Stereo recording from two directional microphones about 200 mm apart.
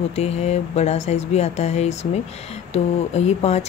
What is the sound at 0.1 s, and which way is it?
Speech, 30° left (ahead or behind).